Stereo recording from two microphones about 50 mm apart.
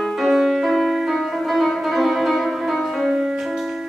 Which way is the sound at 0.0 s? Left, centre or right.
Centre.